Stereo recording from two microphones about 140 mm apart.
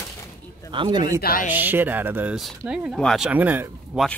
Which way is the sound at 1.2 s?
90° left.